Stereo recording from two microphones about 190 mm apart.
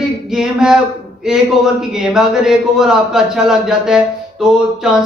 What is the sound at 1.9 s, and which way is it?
Speech, centre (ahead or behind).